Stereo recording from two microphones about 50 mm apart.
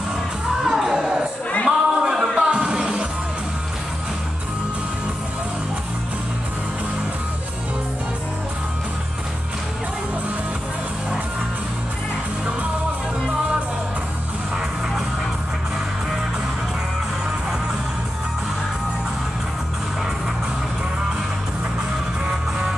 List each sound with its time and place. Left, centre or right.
0.7 s music: centre
1.7 s a sound: centre
2.3 s music: centre